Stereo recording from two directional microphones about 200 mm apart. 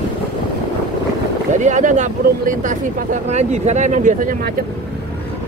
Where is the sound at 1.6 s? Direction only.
40° right (ahead or behind).